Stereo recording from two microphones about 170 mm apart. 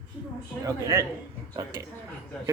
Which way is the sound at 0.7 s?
20° right (ahead or behind).